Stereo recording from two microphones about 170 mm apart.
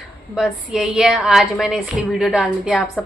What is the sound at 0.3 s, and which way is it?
A woman's voice, centre (ahead or behind).